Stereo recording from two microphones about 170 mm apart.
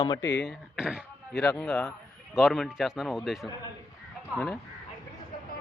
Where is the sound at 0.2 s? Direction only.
90° left.